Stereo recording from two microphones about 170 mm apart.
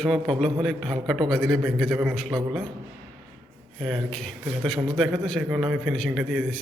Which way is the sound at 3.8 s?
Centre (ahead or behind).